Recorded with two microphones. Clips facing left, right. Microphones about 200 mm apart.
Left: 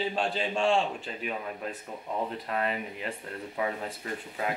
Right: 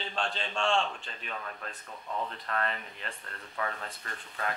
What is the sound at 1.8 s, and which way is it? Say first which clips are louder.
Speech: left 2 dB; 25° left (ahead or behind).